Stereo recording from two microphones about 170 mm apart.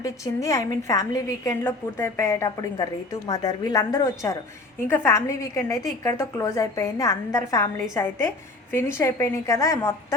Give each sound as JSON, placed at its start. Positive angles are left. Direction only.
{"t": 0.0, "sound": "a woman's voice", "side_deg": 20}